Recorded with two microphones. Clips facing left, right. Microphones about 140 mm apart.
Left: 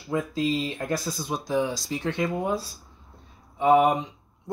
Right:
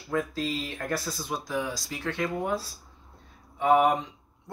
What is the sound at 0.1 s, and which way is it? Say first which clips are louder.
Speech: left 4 dB; 15° left (ahead or behind).